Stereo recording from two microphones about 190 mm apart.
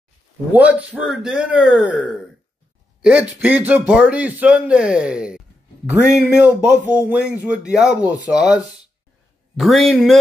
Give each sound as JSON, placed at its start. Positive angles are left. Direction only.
{"t": 0.5, "sound": "a man's voice", "side_deg": -5}
{"t": 9.6, "sound": "a man's voice", "side_deg": 0}